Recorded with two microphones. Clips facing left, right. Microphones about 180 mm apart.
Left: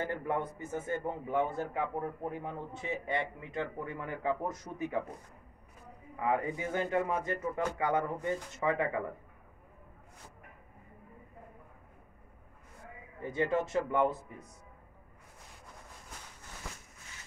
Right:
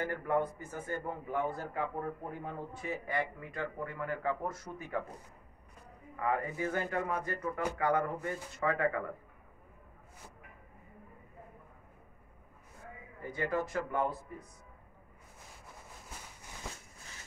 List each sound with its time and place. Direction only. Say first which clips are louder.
0.0 s speech: right 2 dB; 20° left (ahead or behind)
6.1 s speech: left 2 dB; 20° left (ahead or behind)
13.2 s speech: left 3 dB; 25° left (ahead or behind)